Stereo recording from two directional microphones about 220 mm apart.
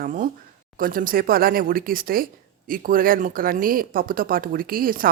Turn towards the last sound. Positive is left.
turn(degrees=-40)  # may be behind; listen again after turning